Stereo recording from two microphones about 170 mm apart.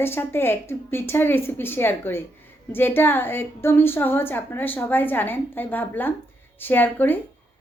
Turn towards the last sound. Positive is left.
turn(degrees=10)  # may be behind; listen again after turning